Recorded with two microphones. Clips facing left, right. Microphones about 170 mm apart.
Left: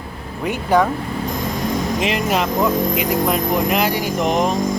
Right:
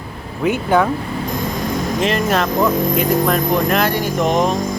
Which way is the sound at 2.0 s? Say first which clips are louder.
Right 4 dB; 15° left (ahead or behind).